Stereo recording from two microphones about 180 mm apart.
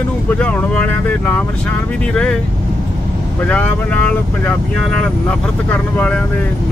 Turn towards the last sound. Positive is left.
turn(degrees=10)  # may be behind; listen again after turning